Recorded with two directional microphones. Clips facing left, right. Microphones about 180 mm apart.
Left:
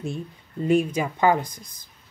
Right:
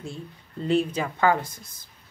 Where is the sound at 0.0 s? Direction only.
15° left (ahead or behind).